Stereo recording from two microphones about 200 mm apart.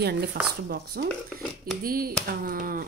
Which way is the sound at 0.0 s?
55° right (ahead or behind).